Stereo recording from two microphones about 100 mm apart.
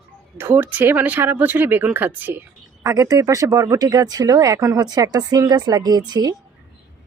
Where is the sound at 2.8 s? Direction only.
35° right (ahead or behind).